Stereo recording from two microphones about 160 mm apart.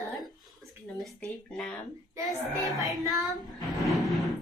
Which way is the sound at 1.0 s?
Centre (ahead or behind).